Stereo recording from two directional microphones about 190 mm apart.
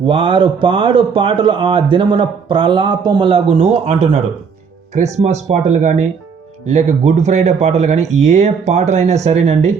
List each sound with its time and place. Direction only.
0.0 s speech: 25° right (ahead or behind)